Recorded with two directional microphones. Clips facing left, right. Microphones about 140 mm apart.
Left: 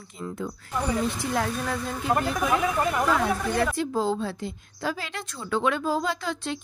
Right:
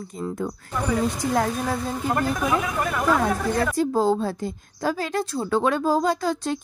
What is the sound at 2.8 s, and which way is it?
Speech, 20° left (ahead or behind).